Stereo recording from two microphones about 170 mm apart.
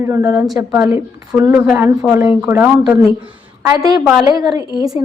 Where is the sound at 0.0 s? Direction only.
15° right (ahead or behind).